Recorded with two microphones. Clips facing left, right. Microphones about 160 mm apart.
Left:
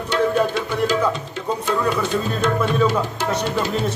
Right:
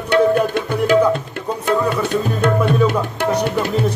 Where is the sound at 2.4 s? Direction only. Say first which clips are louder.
Right 3 dB; 60° right (ahead or behind).